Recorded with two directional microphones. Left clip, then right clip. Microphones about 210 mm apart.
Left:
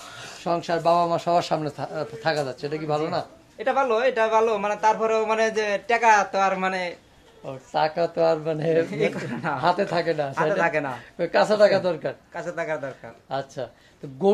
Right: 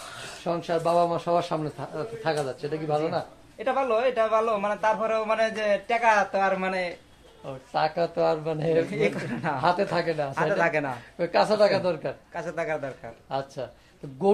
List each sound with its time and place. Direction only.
0.4 s a man's voice: 40° left (ahead or behind)
3.5 s a man's voice: 25° left (ahead or behind)
8.9 s speech: 5° left (ahead or behind)
9.6 s speech: 25° left (ahead or behind)
10.3 s speech: centre (ahead or behind)
11.1 s speech: 25° left (ahead or behind)
12.4 s speech: centre (ahead or behind)
13.3 s speech: 20° left (ahead or behind)